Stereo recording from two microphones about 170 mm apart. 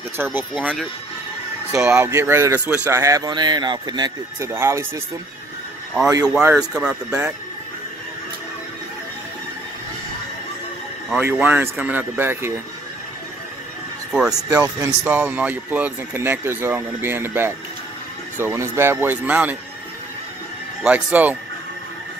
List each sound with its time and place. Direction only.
0.2 s speech: 10° right (ahead or behind)
6.2 s speech: 5° right (ahead or behind)
11.1 s speech: 10° right (ahead or behind)
14.3 s speech: 20° right (ahead or behind)
20.8 s speech: 10° right (ahead or behind)